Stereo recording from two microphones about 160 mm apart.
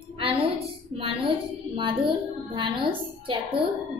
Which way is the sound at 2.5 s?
30° right (ahead or behind).